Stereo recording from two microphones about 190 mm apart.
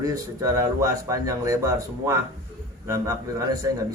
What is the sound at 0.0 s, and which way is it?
A man's voice, 15° right (ahead or behind).